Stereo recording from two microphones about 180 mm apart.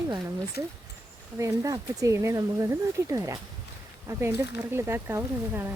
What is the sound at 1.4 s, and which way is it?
Speech, 20° right (ahead or behind).